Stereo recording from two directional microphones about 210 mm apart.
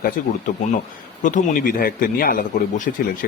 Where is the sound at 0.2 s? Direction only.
40° left (ahead or behind).